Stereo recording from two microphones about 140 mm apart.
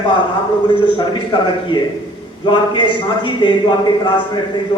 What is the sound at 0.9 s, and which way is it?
A man's voice, 35° left (ahead or behind).